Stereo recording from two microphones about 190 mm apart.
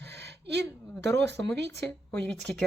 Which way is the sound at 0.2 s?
65° right (ahead or behind).